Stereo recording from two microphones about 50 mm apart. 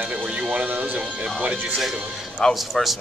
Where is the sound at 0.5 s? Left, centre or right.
Right.